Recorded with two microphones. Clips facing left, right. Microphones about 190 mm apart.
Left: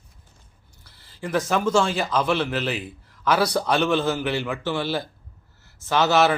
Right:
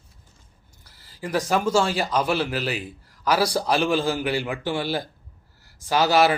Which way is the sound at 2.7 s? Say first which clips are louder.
Even; 35° right (ahead or behind).